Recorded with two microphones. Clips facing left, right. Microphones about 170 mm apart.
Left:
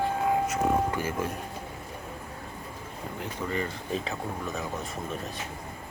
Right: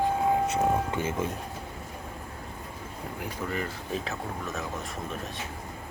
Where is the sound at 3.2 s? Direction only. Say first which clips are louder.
Left 1 dB; 5° right (ahead or behind).